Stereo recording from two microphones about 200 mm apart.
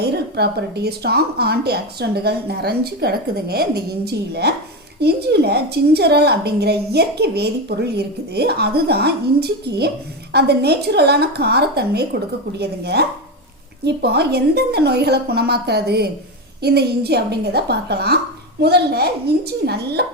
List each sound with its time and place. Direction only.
0.0 s a woman's voice: 55° right (ahead or behind)